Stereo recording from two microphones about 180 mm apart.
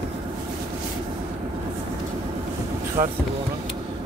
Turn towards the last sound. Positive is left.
turn(degrees=-45)  # may be behind; listen again after turning